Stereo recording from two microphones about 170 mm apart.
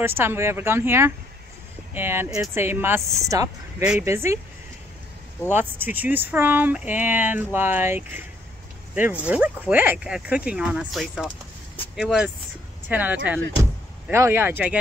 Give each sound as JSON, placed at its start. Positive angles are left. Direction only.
{"t": 0.0, "sound": "speech", "side_deg": -15}
{"t": 5.5, "sound": "speech", "side_deg": -10}